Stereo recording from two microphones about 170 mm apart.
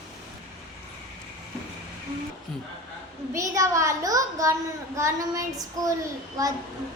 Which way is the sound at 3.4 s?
20° right (ahead or behind).